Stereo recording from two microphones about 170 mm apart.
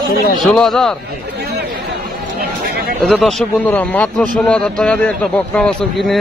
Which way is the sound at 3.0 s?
Centre (ahead or behind).